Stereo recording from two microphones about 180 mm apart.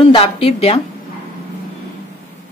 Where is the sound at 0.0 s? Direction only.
30° left (ahead or behind).